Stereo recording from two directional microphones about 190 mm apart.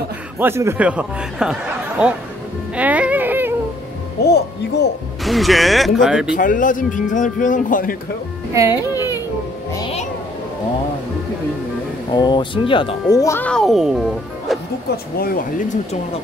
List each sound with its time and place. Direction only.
0.4 s speech: 15° right (ahead or behind)
2.7 s a sound: 5° right (ahead or behind)
4.2 s speech: 60° left (ahead or behind)
5.2 s speech: centre (ahead or behind)
6.3 s speech: 45° left (ahead or behind)
12.1 s speech: 25° left (ahead or behind); by 14.6 s centre (ahead or behind)
15.1 s speech: 50° left (ahead or behind)